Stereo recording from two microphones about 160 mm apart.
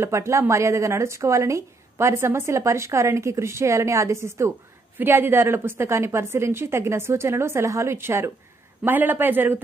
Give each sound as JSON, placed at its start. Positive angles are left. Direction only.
{"t": 0.0, "sound": "speech", "side_deg": -15}